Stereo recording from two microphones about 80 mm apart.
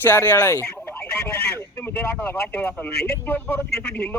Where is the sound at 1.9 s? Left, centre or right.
Left.